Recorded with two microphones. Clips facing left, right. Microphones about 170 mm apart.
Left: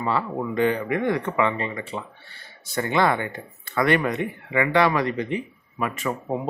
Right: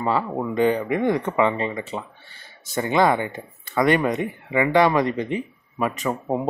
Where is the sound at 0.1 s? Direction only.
20° right (ahead or behind).